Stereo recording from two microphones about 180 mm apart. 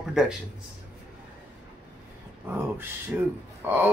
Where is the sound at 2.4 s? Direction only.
10° right (ahead or behind).